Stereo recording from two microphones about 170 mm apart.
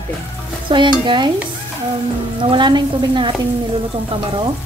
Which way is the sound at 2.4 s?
30° right (ahead or behind).